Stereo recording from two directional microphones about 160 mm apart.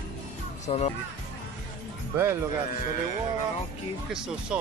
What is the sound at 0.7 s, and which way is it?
Speech, 40° left (ahead or behind).